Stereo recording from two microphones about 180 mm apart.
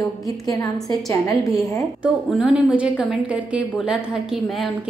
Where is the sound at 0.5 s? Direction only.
20° left (ahead or behind).